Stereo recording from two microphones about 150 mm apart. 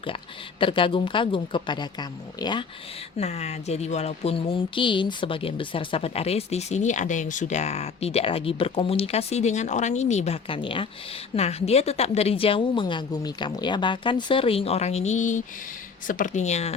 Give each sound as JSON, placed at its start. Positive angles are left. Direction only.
{"t": 0.6, "sound": "a woman's voice", "side_deg": 35}
{"t": 3.2, "sound": "a woman's voice", "side_deg": 45}